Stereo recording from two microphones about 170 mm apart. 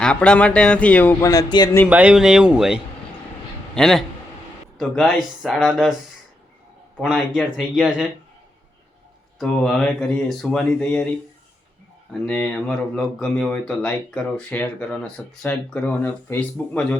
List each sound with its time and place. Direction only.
0.0 s speech: 5° left (ahead or behind)
1.2 s speech: 20° left (ahead or behind)
1.9 s speech: 5° right (ahead or behind)
6.9 s speech: centre (ahead or behind)
9.4 s speech: 5° left (ahead or behind)
12.2 s speech: 5° left (ahead or behind)